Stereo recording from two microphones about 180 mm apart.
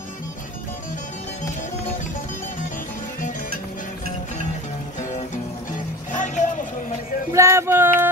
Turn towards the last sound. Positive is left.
turn(degrees=-10)  # may be behind; listen again after turning